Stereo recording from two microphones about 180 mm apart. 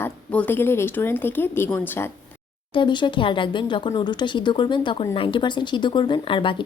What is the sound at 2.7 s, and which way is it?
A woman's voice, 25° left (ahead or behind).